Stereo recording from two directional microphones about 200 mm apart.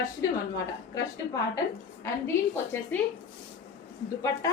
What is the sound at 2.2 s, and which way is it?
Speech, 10° left (ahead or behind).